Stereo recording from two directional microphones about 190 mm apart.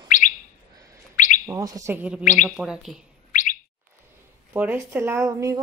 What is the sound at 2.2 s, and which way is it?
Bird, 40° left (ahead or behind).